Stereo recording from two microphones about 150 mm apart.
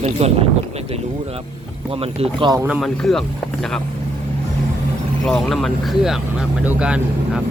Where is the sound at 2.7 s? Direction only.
Centre (ahead or behind).